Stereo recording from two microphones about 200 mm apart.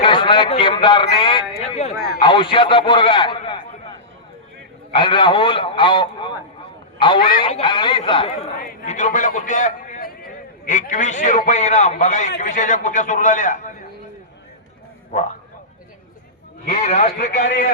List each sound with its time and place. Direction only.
0.0 s a man's voice: 25° left (ahead or behind)
1.2 s a sound: 25° left (ahead or behind)
2.1 s a man's voice: 25° left (ahead or behind)
4.9 s a man's voice: 25° left (ahead or behind)
8.5 s a man's voice: 40° left (ahead or behind)
15.1 s a man's voice: 35° left (ahead or behind)
16.6 s a man's voice: 35° left (ahead or behind)